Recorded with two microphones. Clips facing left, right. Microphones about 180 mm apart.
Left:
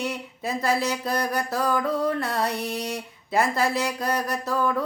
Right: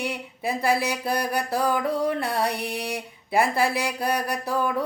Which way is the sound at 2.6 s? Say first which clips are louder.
Left 1 dB; 60° right (ahead or behind).